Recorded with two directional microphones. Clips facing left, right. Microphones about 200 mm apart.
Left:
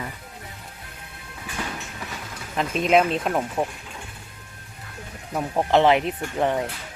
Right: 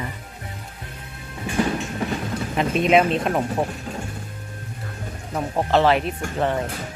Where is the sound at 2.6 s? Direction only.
Centre (ahead or behind).